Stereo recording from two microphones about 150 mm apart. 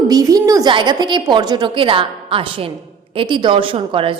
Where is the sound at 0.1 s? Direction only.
25° right (ahead or behind).